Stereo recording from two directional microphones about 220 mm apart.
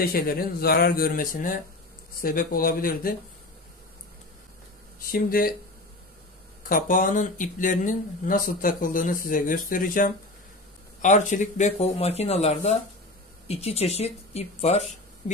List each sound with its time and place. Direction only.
0.0 s speech: 40° left (ahead or behind)
5.0 s speech: 40° left (ahead or behind)
6.7 s speech: 40° left (ahead or behind)